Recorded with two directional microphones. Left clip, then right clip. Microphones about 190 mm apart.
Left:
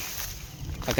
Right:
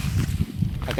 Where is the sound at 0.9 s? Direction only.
15° left (ahead or behind).